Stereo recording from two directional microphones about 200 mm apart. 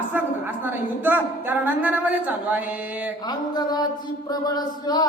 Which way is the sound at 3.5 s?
20° left (ahead or behind).